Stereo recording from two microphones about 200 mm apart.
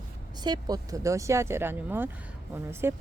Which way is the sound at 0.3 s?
20° right (ahead or behind).